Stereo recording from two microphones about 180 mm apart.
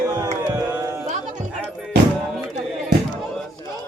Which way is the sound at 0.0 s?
20° right (ahead or behind).